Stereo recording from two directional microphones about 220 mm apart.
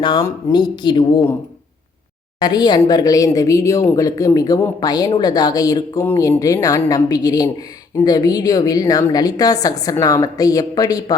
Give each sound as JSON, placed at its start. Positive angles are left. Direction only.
{"t": 0.0, "sound": "speech", "side_deg": 15}
{"t": 2.4, "sound": "speech", "side_deg": 20}